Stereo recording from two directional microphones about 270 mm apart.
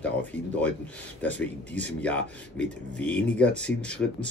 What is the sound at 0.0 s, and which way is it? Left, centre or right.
Speech, centre.